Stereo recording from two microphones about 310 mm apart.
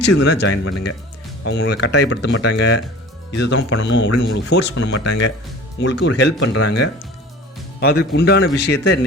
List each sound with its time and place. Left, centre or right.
0.0 s speech: left